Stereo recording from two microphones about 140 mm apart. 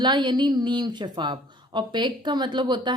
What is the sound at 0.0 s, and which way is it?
A woman's voice, 30° right (ahead or behind).